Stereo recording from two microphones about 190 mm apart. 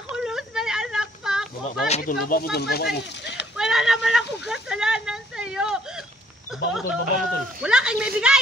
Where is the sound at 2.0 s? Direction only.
50° left (ahead or behind); by 3.5 s 65° left (ahead or behind).